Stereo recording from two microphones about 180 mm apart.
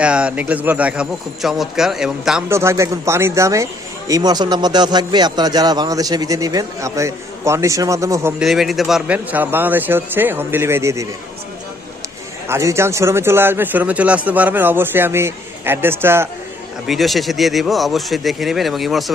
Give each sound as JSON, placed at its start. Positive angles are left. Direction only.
{"t": 0.0, "sound": "speech", "side_deg": -5}
{"t": 2.5, "sound": "a man's voice", "side_deg": -15}
{"t": 8.4, "sound": "speech", "side_deg": 0}
{"t": 12.5, "sound": "speech", "side_deg": -15}
{"t": 16.8, "sound": "speech", "side_deg": 0}